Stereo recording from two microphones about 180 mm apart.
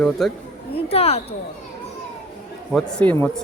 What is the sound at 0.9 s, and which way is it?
Speech, 35° left (ahead or behind).